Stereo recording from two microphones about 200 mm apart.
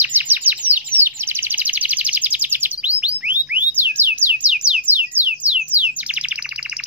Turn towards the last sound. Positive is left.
turn(degrees=-5)  # may be behind; listen again after turning